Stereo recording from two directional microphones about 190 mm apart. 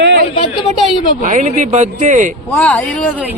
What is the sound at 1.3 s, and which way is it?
Speech, 40° right (ahead or behind).